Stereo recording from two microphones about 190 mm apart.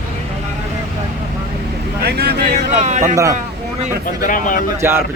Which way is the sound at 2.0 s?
60° right (ahead or behind).